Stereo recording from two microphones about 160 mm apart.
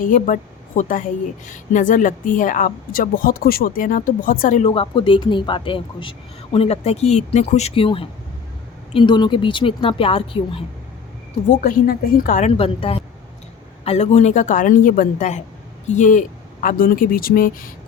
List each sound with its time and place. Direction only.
0.0 s a woman's voice: 55° left (ahead or behind)
4.6 s speech: 35° left (ahead or behind)
11.6 s a woman's voice: 60° left (ahead or behind)
12.5 s a woman's voice: 35° left (ahead or behind); by 17.5 s 60° left (ahead or behind)